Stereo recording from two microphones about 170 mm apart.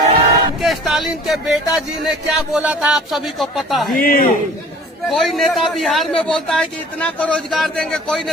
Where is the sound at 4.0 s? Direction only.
55° left (ahead or behind).